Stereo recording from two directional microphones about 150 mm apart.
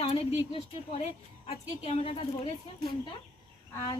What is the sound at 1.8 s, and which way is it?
Speech, 40° left (ahead or behind).